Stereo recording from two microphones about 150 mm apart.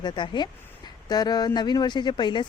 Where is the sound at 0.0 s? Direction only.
30° left (ahead or behind).